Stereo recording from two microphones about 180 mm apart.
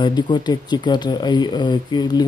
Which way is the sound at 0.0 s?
25° left (ahead or behind).